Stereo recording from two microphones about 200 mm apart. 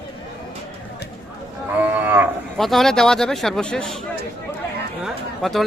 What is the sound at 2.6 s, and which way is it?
Speech, centre (ahead or behind).